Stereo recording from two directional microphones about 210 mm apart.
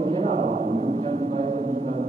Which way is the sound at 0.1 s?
30° right (ahead or behind).